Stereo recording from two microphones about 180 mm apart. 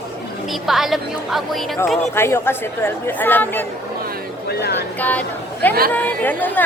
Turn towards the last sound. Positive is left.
turn(degrees=10)  # may be behind; listen again after turning